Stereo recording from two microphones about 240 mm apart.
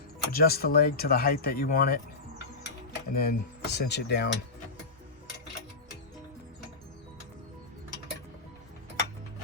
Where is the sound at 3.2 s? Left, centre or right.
Left.